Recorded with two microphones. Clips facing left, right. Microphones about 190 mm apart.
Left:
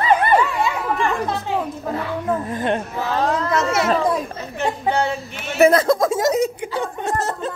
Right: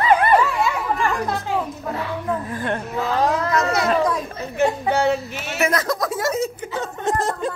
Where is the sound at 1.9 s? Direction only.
25° left (ahead or behind).